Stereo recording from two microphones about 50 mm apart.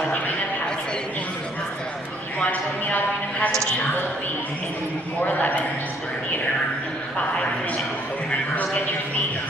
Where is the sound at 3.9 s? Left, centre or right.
Left.